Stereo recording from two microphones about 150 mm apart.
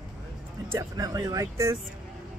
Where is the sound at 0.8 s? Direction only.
25° right (ahead or behind).